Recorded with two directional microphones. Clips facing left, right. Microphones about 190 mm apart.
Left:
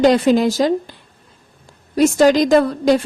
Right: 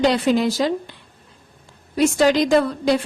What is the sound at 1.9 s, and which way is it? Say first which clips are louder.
Speech: left 4 dB; 45° left (ahead or behind).